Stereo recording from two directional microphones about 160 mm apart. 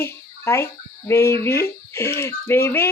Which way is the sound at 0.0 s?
15° left (ahead or behind).